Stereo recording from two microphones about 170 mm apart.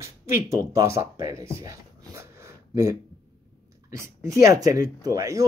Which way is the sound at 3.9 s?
15° right (ahead or behind).